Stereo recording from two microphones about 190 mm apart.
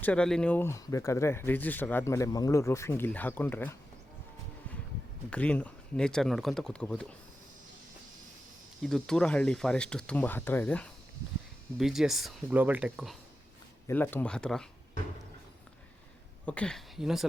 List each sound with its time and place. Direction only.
0.0 s speech: 5° left (ahead or behind)
5.3 s speech: 5° left (ahead or behind)
8.8 s speech: centre (ahead or behind)
13.8 s speech: 10° left (ahead or behind)
16.5 s speech: 5° left (ahead or behind)